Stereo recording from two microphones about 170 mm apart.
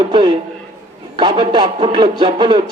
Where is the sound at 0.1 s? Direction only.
30° right (ahead or behind).